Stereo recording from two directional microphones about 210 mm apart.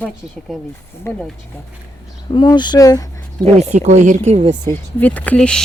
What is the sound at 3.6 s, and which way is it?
Speech, 35° right (ahead or behind).